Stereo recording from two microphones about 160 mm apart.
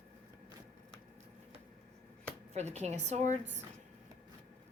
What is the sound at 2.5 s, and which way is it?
A woman's voice, 45° right (ahead or behind).